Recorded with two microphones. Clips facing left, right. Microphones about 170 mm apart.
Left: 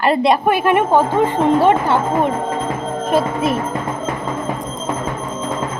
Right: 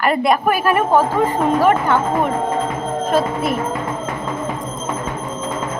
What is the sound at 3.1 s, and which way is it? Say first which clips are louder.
Music: left 2 dB; 15° left (ahead or behind).